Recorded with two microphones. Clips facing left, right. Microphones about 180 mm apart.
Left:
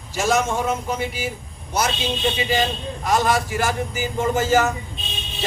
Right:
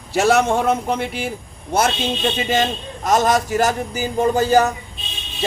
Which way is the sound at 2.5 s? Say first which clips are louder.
Right 2 dB; 45° right (ahead or behind).